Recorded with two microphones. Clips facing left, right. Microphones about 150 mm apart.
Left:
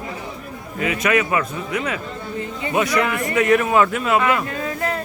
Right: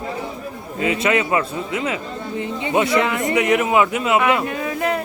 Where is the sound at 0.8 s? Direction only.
25° right (ahead or behind).